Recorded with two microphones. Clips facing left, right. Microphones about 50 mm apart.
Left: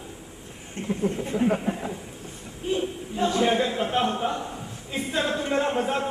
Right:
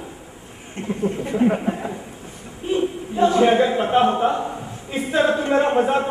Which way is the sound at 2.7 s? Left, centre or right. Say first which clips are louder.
Right 5 dB; centre.